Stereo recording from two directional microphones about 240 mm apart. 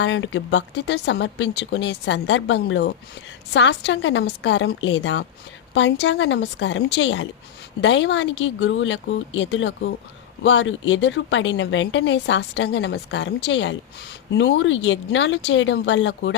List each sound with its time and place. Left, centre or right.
0.0 s speech: left